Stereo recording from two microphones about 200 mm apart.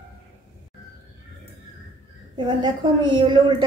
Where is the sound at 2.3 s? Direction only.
25° right (ahead or behind).